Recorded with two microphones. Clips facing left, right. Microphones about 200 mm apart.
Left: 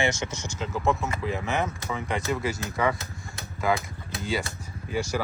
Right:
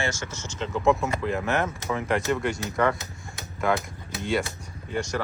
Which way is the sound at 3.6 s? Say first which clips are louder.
Right 1 dB; centre (ahead or behind).